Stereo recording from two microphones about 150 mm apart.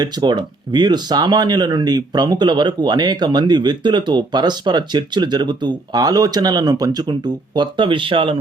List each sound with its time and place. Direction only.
0.0 s speech: 30° right (ahead or behind)